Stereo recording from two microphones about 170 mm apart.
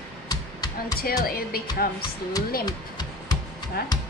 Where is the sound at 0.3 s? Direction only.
20° left (ahead or behind).